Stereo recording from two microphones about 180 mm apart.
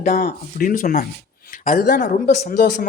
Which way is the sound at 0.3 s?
50° left (ahead or behind).